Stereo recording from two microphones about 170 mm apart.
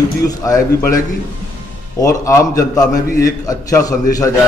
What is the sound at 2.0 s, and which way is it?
A man's voice, 20° left (ahead or behind).